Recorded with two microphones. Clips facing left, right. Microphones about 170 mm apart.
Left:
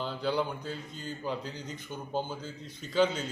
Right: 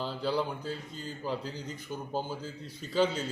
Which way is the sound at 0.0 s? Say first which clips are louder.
Even; 5° right (ahead or behind).